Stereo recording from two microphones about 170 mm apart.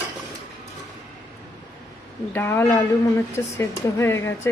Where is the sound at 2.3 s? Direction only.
15° left (ahead or behind).